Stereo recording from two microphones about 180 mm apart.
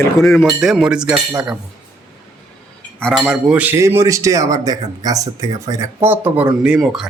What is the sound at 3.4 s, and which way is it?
A man's voice, 10° right (ahead or behind).